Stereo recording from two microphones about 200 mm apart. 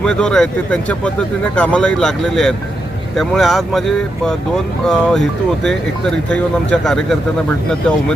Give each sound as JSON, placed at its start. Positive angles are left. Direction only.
{"t": 0.0, "sound": "speech", "side_deg": 5}